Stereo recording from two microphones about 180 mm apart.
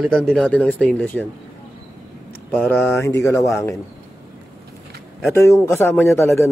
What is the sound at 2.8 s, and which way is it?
Speech, 15° left (ahead or behind).